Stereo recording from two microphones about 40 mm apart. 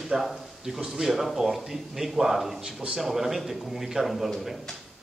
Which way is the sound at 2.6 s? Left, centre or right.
Centre.